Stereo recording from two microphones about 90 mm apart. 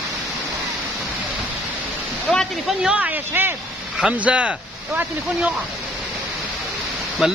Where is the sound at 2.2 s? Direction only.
5° left (ahead or behind).